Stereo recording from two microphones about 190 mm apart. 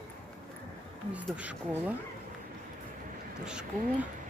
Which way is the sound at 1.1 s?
5° right (ahead or behind).